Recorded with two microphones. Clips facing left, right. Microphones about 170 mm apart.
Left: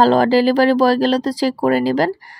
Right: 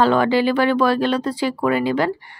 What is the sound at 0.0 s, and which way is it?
Speech, 35° left (ahead or behind).